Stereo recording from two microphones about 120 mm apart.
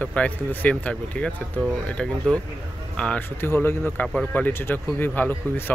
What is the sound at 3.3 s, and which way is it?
Speech, 20° left (ahead or behind).